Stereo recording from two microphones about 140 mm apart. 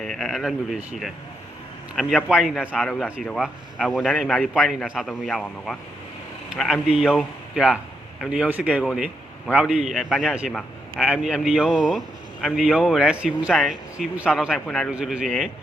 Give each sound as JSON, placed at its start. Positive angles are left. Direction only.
{"t": 0.0, "sound": "a man's voice", "side_deg": 5}
{"t": 11.9, "sound": "a sound", "side_deg": 0}
{"t": 12.6, "sound": "a man's voice", "side_deg": -5}